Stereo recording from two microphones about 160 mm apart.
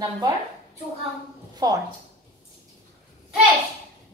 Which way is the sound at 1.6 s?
25° right (ahead or behind).